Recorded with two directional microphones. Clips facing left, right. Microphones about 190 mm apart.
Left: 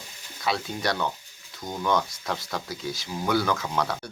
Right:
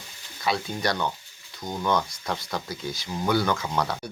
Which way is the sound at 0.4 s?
Centre (ahead or behind).